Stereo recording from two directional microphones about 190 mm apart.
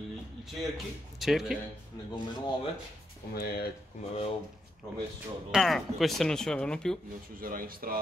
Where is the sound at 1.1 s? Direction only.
Centre (ahead or behind).